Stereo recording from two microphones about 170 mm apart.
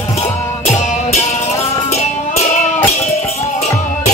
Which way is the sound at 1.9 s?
40° left (ahead or behind).